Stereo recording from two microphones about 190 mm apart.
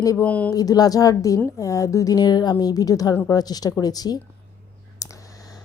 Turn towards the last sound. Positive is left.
turn(degrees=20)  # may be behind; listen again after turning